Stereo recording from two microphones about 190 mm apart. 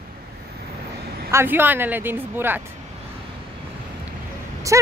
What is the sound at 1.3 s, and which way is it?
Speech, 10° right (ahead or behind).